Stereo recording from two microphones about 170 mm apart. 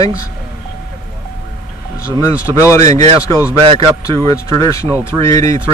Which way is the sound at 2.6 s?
15° left (ahead or behind).